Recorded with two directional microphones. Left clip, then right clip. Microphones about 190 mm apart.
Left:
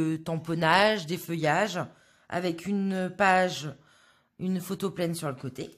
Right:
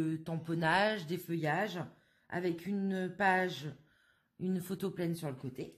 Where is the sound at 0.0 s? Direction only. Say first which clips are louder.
Left 7 dB; 30° left (ahead or behind).